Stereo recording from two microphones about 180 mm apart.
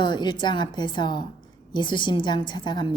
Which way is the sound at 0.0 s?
25° left (ahead or behind).